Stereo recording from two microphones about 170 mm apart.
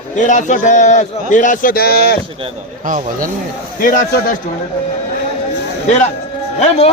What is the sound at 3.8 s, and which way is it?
Speech, 55° left (ahead or behind).